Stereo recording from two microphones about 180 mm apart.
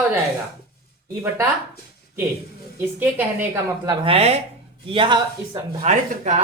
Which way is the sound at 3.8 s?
30° right (ahead or behind).